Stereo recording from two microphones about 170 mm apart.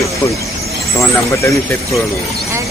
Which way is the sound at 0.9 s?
20° left (ahead or behind).